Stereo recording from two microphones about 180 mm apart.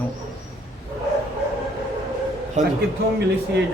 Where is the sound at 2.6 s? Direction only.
40° right (ahead or behind).